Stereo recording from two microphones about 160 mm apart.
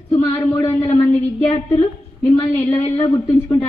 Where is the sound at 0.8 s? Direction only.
40° left (ahead or behind).